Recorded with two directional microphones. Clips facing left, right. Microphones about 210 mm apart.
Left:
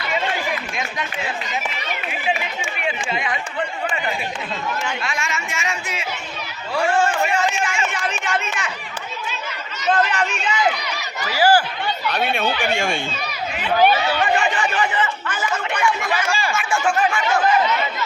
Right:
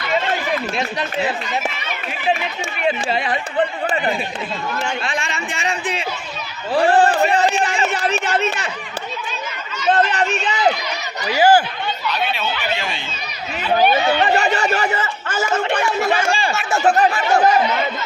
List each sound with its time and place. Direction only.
2.8 s speech: 35° right (ahead or behind)
9.9 s run: 35° right (ahead or behind)
11.3 s speech: 20° right (ahead or behind)
12.0 s speech: 50° left (ahead or behind)
14.1 s speech: 35° right (ahead or behind)